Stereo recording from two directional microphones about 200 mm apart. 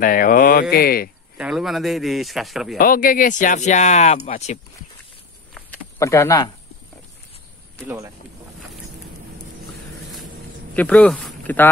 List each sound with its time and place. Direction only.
0.0 s speech: 45° left (ahead or behind)
1.4 s speech: centre (ahead or behind)
2.8 s speech: 45° left (ahead or behind)
5.5 s a sound: 10° left (ahead or behind)
10.8 s speech: 5° left (ahead or behind)